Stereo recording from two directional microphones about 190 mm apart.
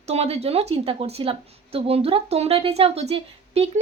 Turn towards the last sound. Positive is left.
turn(degrees=-30)  # may be behind; listen again after turning